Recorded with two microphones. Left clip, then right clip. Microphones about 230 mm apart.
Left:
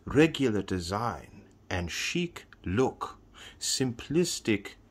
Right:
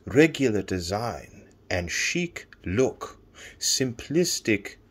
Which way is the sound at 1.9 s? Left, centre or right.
Left.